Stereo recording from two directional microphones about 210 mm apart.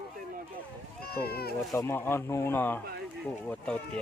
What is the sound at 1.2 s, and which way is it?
Speech, 45° left (ahead or behind).